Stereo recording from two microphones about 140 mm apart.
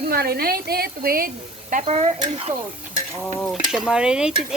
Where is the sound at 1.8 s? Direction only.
45° right (ahead or behind).